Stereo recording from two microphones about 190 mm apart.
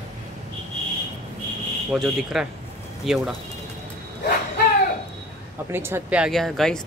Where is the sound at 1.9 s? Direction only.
Centre (ahead or behind).